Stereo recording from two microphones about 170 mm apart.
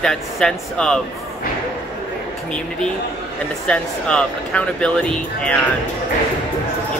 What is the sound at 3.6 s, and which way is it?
Speech, 5° left (ahead or behind).